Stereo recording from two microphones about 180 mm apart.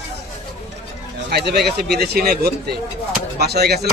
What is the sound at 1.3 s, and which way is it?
Speech, 65° right (ahead or behind).